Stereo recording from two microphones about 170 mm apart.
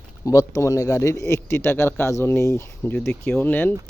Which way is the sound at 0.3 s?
15° left (ahead or behind).